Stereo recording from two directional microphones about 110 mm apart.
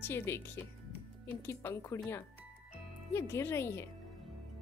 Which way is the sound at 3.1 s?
20° left (ahead or behind).